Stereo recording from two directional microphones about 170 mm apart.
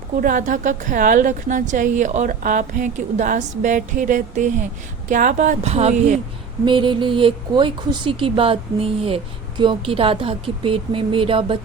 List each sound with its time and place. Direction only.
0.2 s a woman's voice: 50° right (ahead or behind)
6.7 s speech: 30° right (ahead or behind)